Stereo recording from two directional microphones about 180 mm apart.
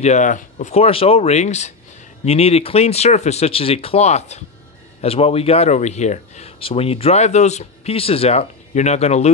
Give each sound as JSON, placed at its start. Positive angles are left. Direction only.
{"t": 0.0, "sound": "speech", "side_deg": 40}